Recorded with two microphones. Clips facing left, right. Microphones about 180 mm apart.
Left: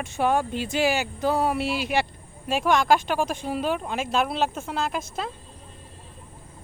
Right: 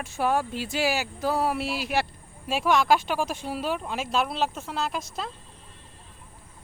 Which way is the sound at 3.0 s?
50° left (ahead or behind).